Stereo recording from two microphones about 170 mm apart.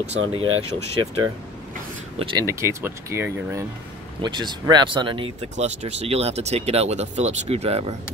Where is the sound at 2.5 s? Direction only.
15° right (ahead or behind).